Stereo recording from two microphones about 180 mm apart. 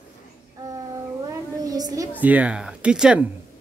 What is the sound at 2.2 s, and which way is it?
Speech, 10° right (ahead or behind).